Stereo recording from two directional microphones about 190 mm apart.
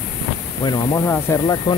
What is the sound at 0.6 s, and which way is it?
Speech, 20° left (ahead or behind).